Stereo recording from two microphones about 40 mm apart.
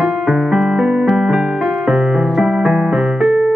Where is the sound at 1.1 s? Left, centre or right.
Centre.